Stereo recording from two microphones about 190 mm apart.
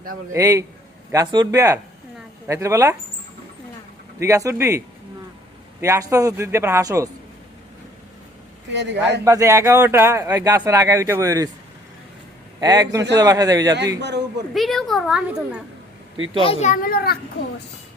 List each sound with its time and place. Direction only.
0.3 s speech: 15° right (ahead or behind)
4.2 s speech: 15° right (ahead or behind)
5.8 s speech: 15° right (ahead or behind)
8.7 s a man's voice: 65° right (ahead or behind)
9.2 s speech: 15° right (ahead or behind)
12.5 s a man's voice: 20° right (ahead or behind)
14.0 s speech: 65° right (ahead or behind)
14.5 s a woman's voice: centre (ahead or behind)
16.4 s a child's voice: 35° left (ahead or behind); by 17.2 s 55° left (ahead or behind)